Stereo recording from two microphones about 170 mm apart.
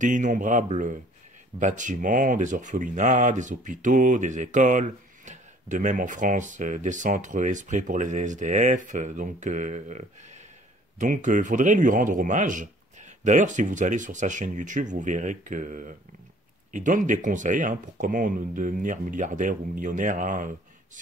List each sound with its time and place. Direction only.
0.0 s speech: 50° right (ahead or behind)